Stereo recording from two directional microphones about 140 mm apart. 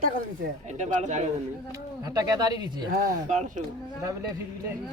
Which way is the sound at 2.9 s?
70° right (ahead or behind).